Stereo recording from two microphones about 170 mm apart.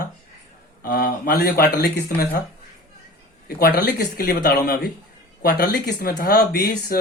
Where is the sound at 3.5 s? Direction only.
60° left (ahead or behind).